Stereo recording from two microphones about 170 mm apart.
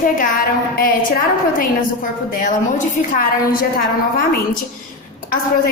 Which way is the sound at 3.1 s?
55° left (ahead or behind).